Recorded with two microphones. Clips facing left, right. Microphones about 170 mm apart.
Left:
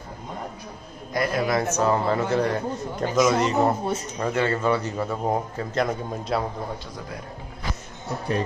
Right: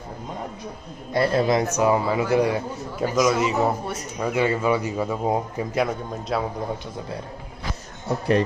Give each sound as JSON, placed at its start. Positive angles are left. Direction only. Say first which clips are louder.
{"t": 1.1, "sound": "a man's voice", "louder": "right 4 dB", "side_deg": -30}
{"t": 5.9, "sound": "a man's voice", "louder": "even", "side_deg": 0}